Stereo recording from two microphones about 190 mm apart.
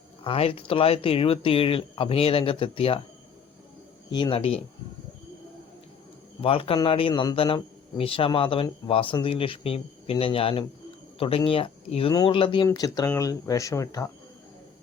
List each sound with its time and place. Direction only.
0.3 s a man's voice: 30° left (ahead or behind)
4.1 s a man's voice: 25° left (ahead or behind)
6.4 s a man's voice: 30° left (ahead or behind)